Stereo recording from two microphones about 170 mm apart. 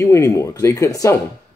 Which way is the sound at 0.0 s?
20° left (ahead or behind).